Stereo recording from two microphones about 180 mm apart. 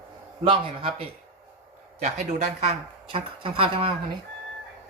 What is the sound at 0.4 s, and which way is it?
Speech, 30° right (ahead or behind).